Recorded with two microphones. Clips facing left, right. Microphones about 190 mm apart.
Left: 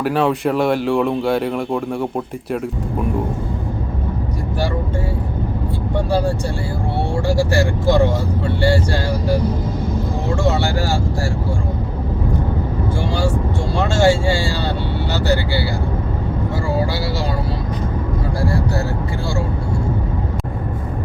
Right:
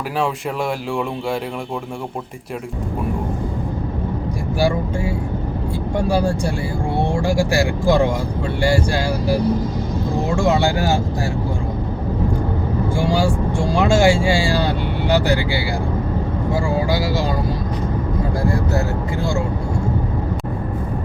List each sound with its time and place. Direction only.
0.2 s speech: centre (ahead or behind)
6.1 s speech: 10° right (ahead or behind)
10.3 s speech: 15° right (ahead or behind)
13.0 s speech: 10° right (ahead or behind)
18.4 s vehicle: 20° right (ahead or behind)